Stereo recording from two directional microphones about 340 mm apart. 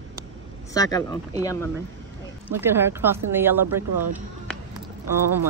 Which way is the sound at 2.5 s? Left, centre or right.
Centre.